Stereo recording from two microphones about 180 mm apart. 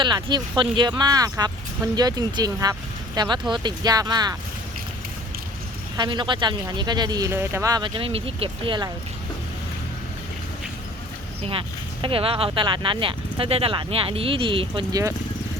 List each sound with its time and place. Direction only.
0.0 s speech: 25° right (ahead or behind)
6.0 s speech: 25° right (ahead or behind)
12.0 s speech: 30° right (ahead or behind)